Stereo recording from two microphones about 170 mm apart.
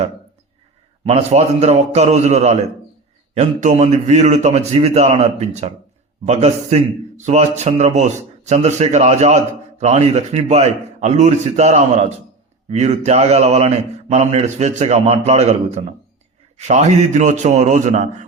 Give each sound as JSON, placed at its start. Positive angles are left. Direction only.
{"t": 1.0, "sound": "a man's voice", "side_deg": -40}